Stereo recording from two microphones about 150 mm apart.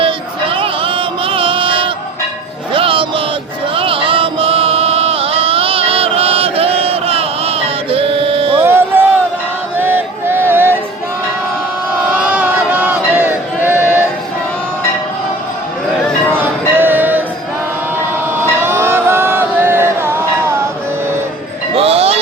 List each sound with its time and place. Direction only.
0.0 s music: 35° right (ahead or behind)
2.7 s a sound: 35° right (ahead or behind)
8.6 s a sound: 15° right (ahead or behind)
12.2 s crowd: 10° right (ahead or behind)
16.3 s music: 15° right (ahead or behind)
18.3 s music: 15° right (ahead or behind)
21.8 s music: 40° right (ahead or behind)